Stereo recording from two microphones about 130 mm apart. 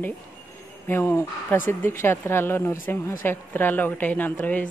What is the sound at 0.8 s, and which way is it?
Speech, 15° left (ahead or behind).